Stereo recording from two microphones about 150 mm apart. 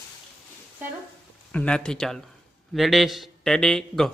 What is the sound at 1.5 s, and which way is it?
Speech, 5° left (ahead or behind).